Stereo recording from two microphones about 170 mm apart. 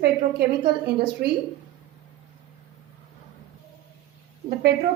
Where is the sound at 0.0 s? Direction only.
70° right (ahead or behind).